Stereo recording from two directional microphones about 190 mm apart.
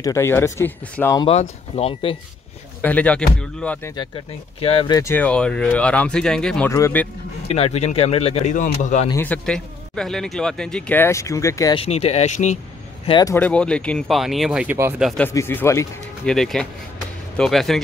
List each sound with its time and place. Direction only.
0.0 s speech: 15° left (ahead or behind)
1.2 s speech: 35° left (ahead or behind)
2.8 s speech: 10° left (ahead or behind)
3.9 s speech: 25° left (ahead or behind)
7.4 s speech: 30° left (ahead or behind)
9.1 s speech: 10° left (ahead or behind)
11.8 s speech: 35° left (ahead or behind)
13.0 s speech: 25° left (ahead or behind)
13.3 s speech: 5° left (ahead or behind); by 15.0 s 10° right (ahead or behind)
15.0 s speech: 10° left (ahead or behind)
16.3 s speech: 5° left (ahead or behind)